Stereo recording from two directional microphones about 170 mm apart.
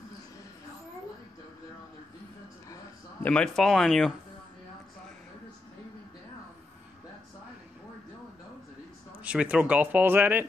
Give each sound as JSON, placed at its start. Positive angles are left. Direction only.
{"t": 2.7, "sound": "speech", "side_deg": 10}
{"t": 9.2, "sound": "speech", "side_deg": -5}